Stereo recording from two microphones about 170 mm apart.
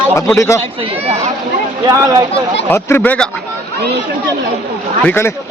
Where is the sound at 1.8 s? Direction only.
20° right (ahead or behind).